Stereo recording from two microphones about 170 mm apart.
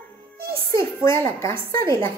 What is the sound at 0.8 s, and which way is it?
A child's voice, 15° left (ahead or behind).